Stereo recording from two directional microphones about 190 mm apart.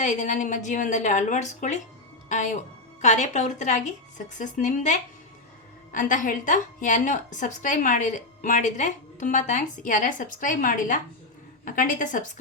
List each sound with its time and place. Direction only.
0.0 s a woman's voice: 40° left (ahead or behind)